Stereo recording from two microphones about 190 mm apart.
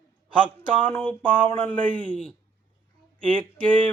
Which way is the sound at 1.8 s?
25° right (ahead or behind).